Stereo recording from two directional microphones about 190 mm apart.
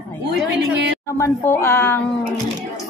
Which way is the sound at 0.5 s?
65° right (ahead or behind).